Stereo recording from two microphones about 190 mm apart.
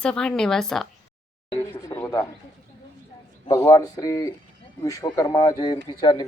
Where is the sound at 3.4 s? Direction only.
15° left (ahead or behind).